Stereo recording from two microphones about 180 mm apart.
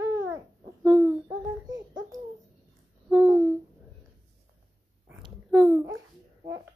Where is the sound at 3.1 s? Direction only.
20° right (ahead or behind).